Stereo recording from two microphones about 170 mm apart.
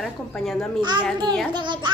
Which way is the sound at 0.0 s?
Centre (ahead or behind).